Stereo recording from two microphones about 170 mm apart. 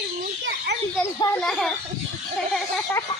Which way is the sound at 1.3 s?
Centre (ahead or behind).